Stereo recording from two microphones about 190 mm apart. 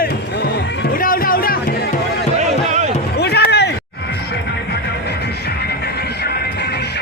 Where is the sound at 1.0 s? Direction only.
50° left (ahead or behind).